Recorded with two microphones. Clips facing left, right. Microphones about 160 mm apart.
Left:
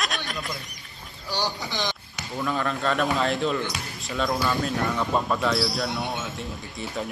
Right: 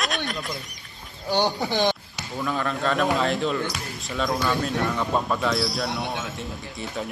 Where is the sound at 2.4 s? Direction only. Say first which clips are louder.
Even; centre (ahead or behind).